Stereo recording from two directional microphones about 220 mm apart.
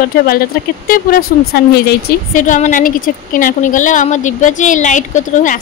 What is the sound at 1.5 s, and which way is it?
Speech, 40° left (ahead or behind).